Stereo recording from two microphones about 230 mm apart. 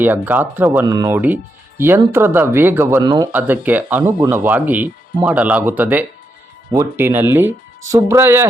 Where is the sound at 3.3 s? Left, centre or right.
Centre.